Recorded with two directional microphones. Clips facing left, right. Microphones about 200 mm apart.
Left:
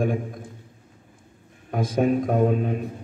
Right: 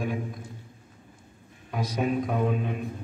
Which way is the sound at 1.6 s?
50° left (ahead or behind).